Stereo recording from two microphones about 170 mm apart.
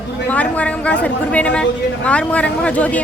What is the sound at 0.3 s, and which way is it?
A woman's voice, 10° left (ahead or behind).